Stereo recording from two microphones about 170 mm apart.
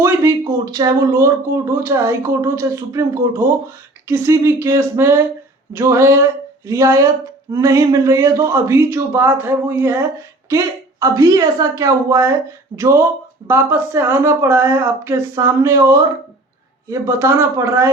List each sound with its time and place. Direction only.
0.0 s speech: 15° right (ahead or behind)